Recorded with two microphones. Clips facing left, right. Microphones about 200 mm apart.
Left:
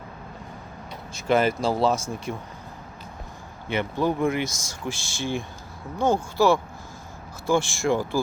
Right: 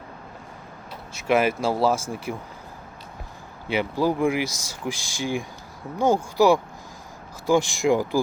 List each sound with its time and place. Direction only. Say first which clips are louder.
1.1 s speech: even; 5° right (ahead or behind)
3.7 s speech: right 2 dB; 10° right (ahead or behind)